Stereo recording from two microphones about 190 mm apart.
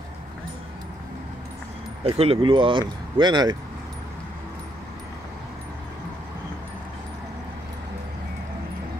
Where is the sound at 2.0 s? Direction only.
30° right (ahead or behind).